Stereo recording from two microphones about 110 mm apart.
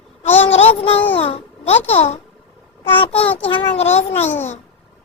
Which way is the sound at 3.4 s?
55° left (ahead or behind).